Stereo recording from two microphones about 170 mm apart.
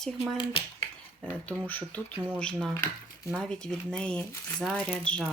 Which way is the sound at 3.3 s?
5° left (ahead or behind).